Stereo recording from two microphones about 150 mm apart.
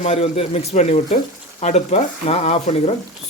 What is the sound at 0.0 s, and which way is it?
Speech, 40° left (ahead or behind).